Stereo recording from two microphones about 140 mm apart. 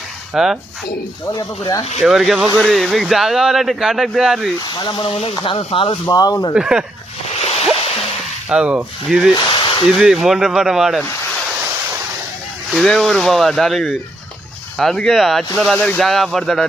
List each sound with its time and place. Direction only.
0.3 s speech: 5° right (ahead or behind)
1.3 s speech: 25° left (ahead or behind)
2.0 s speech: centre (ahead or behind)
4.6 s speech: 30° left (ahead or behind)
6.1 s speech: 25° left (ahead or behind)
6.5 s speech: 5° right (ahead or behind)
7.3 s a sound: 45° left (ahead or behind)
8.4 s speech: 5° right (ahead or behind)
9.3 s a sound: 30° left (ahead or behind)
9.8 s speech: 5° right (ahead or behind)
12.7 s speech: centre (ahead or behind)